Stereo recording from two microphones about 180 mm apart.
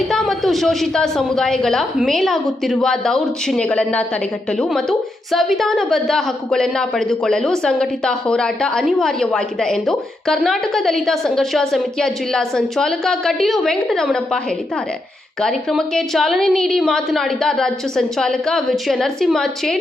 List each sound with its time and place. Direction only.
0.1 s a woman's voice: centre (ahead or behind)
15.4 s a woman's voice: 5° left (ahead or behind)